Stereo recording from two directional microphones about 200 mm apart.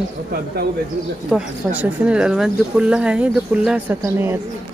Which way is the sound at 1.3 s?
5° right (ahead or behind).